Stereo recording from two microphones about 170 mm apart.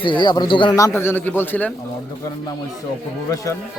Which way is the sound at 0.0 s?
25° left (ahead or behind).